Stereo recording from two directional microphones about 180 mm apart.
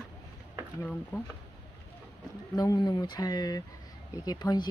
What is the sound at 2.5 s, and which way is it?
Speech, 20° left (ahead or behind).